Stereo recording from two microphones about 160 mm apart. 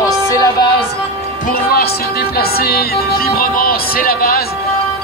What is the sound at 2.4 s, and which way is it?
Speech, 75° left (ahead or behind).